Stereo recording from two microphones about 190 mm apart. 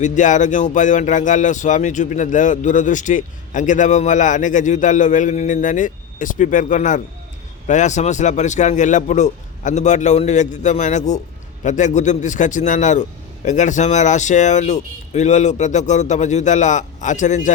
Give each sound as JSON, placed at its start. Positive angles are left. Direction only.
{"t": 0.0, "sound": "speech", "side_deg": 40}